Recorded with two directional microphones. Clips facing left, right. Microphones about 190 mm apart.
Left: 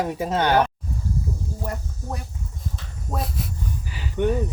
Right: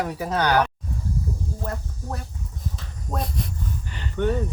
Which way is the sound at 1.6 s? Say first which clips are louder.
Even; 10° left (ahead or behind).